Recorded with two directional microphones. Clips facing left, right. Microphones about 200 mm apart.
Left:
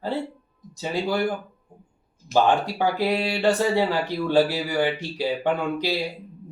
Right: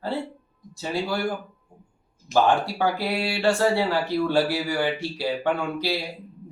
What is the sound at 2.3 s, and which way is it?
Speech, 15° left (ahead or behind).